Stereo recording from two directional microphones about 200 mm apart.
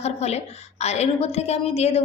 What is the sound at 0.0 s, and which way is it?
A woman's voice, 30° left (ahead or behind).